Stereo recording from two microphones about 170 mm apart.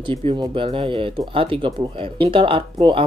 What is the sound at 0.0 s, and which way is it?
Speech, 30° right (ahead or behind).